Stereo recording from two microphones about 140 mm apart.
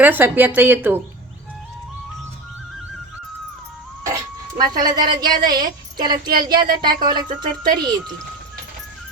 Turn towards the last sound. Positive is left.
turn(degrees=-30)  # may be behind; listen again after turning